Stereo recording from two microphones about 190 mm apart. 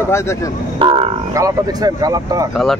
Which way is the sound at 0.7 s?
30° right (ahead or behind).